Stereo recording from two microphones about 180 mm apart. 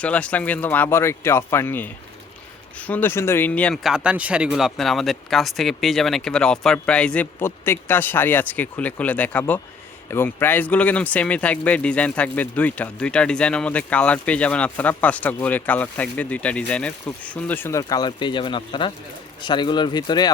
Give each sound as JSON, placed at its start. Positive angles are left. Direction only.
{"t": 0.0, "sound": "speech", "side_deg": 5}